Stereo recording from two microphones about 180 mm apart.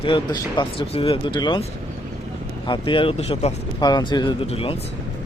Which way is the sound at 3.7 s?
25° left (ahead or behind).